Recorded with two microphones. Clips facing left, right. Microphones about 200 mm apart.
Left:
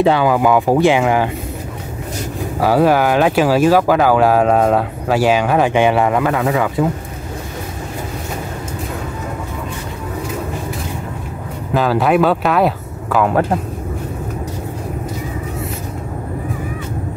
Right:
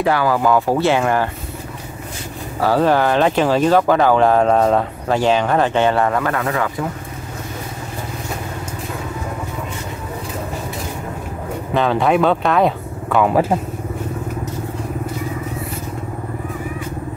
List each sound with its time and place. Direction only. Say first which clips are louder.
0.0 s speech: left 3 dB; 20° left (ahead or behind)
2.6 s speech: left 2 dB; 10° left (ahead or behind)
11.7 s speech: left 2 dB; 5° left (ahead or behind)